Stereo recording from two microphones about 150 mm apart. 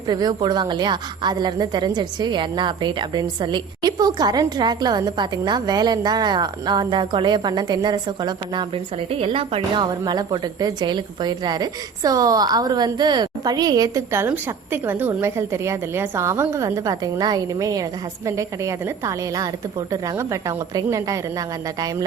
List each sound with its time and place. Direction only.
0.1 s a woman's voice: 25° right (ahead or behind)